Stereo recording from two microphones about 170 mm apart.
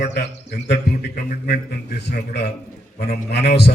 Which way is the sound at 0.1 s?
75° left (ahead or behind).